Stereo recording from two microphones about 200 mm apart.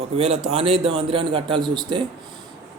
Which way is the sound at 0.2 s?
30° right (ahead or behind).